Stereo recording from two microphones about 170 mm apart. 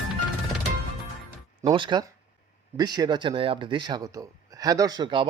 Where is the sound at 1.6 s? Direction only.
30° right (ahead or behind).